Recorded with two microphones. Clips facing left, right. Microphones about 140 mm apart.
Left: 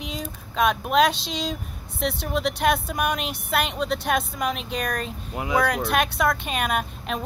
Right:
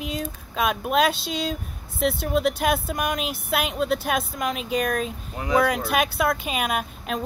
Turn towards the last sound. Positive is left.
turn(degrees=0)  # may be behind; listen again after turning